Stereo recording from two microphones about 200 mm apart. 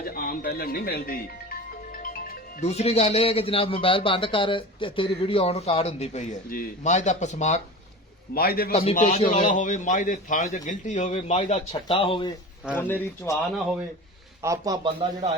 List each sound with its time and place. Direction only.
0.0 s music: 45° left (ahead or behind)
2.6 s a man's voice: 30° left (ahead or behind)
8.3 s a man's voice: 50° left (ahead or behind)
8.7 s a man's voice: 30° left (ahead or behind)
12.7 s speech: 10° left (ahead or behind)
14.4 s a man's voice: 15° right (ahead or behind)